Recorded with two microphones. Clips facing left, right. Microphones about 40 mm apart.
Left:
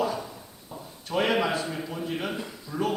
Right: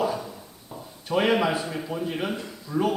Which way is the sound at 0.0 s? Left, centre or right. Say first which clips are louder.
Right 2 dB; centre.